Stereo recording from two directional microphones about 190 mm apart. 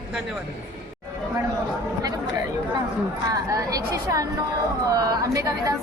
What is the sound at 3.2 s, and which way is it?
A woman's voice, 20° right (ahead or behind).